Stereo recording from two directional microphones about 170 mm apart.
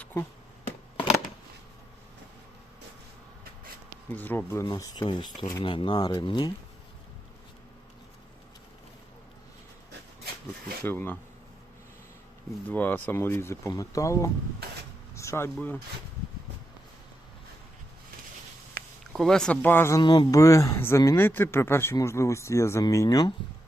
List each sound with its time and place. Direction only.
0.0 s a sound: 10° left (ahead or behind)
4.1 s speech: 10° left (ahead or behind)
4.6 s speech: 25° left (ahead or behind)
10.8 s speech: 10° left (ahead or behind)
12.7 s speech: 10° left (ahead or behind)
15.1 s vehicle: 15° left (ahead or behind)
15.5 s speech: 10° left (ahead or behind)
18.8 s a sound: 60° right (ahead or behind)
19.1 s speech: 5° left (ahead or behind)
20.0 s speech: 25° left (ahead or behind)